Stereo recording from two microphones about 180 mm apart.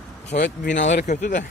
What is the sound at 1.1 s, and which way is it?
Speech, 45° left (ahead or behind).